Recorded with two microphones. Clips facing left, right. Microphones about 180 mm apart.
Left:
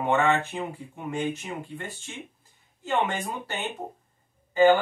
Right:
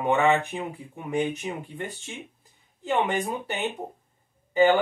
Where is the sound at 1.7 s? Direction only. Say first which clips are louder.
Right 2 dB; 15° right (ahead or behind).